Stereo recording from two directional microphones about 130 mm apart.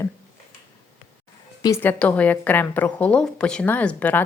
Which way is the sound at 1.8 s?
15° left (ahead or behind).